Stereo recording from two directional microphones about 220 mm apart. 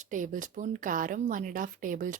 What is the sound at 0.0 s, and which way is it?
A woman's voice, 35° right (ahead or behind).